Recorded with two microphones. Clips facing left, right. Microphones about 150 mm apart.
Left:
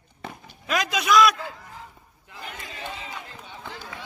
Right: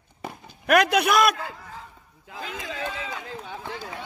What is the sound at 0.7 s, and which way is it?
Speech, 65° right (ahead or behind).